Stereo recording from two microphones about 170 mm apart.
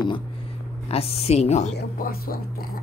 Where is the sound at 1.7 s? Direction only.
65° left (ahead or behind).